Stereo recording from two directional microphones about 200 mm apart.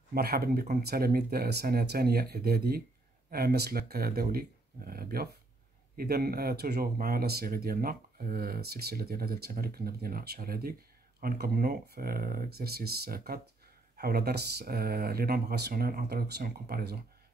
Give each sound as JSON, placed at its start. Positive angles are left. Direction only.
{"t": 0.1, "sound": "speech", "side_deg": -50}